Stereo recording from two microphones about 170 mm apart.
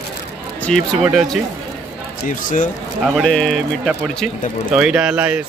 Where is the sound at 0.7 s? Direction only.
5° left (ahead or behind).